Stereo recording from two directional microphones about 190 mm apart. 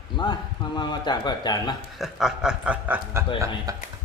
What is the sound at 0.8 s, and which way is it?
Speech, 25° left (ahead or behind).